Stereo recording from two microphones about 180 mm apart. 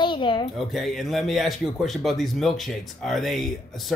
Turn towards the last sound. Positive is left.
turn(degrees=0)  # may be behind; listen again after turning